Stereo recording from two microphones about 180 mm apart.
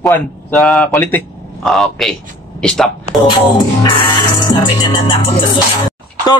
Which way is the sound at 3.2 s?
25° left (ahead or behind).